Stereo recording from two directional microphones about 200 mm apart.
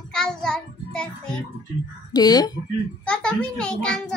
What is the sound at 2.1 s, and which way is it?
Speech, 20° left (ahead or behind).